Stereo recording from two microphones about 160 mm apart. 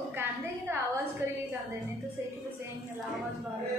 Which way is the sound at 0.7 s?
15° right (ahead or behind).